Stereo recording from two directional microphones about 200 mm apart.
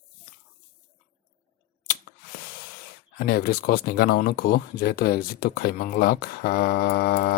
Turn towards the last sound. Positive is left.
turn(degrees=50)  # may be behind; listen again after turning